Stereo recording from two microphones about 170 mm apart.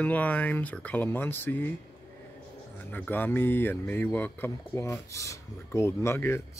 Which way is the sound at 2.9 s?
10° left (ahead or behind).